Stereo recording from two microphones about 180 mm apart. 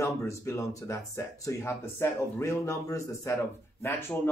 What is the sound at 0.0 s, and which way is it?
A man's voice, 15° left (ahead or behind).